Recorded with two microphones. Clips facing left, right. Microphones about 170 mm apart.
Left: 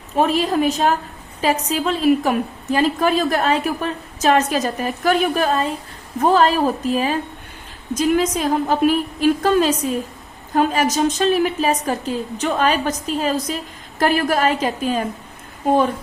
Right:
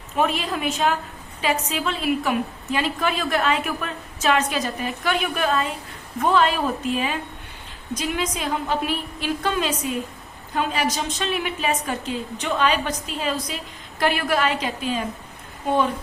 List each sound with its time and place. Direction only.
0.2 s a woman's voice: 35° left (ahead or behind)